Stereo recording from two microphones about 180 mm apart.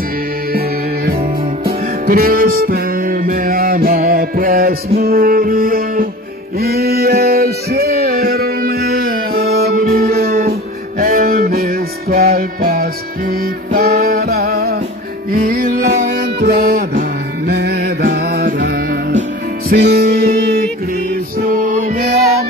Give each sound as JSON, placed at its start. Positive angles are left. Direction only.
{"t": 0.5, "sound": "music", "side_deg": -55}
{"t": 6.6, "sound": "a sound", "side_deg": -60}
{"t": 15.3, "sound": "music", "side_deg": -50}
{"t": 16.1, "sound": "music", "side_deg": -65}